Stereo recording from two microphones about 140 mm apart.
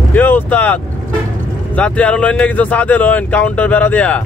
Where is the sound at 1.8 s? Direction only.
10° left (ahead or behind).